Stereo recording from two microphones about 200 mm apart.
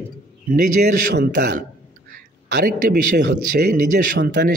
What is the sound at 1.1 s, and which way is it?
A man's voice, 55° right (ahead or behind).